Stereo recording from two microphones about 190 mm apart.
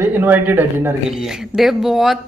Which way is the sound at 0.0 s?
10° right (ahead or behind).